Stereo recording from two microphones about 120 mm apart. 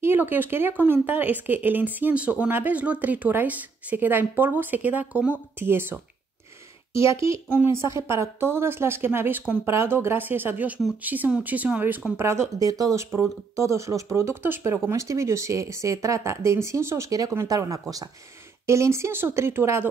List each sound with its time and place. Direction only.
0.0 s speech: 20° right (ahead or behind)
12.5 s speech: 30° right (ahead or behind)